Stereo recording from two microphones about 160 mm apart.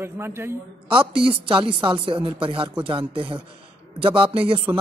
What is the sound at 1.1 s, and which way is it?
Speech, 35° right (ahead or behind).